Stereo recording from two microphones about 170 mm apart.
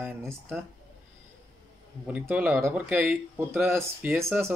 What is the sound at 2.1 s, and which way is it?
Speech, 10° right (ahead or behind).